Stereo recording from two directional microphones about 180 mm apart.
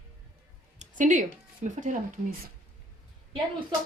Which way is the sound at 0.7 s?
45° right (ahead or behind).